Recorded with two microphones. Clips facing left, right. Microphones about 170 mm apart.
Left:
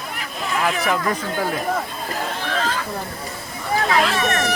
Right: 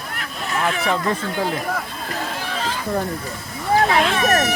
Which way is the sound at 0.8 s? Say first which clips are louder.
Even; 25° right (ahead or behind).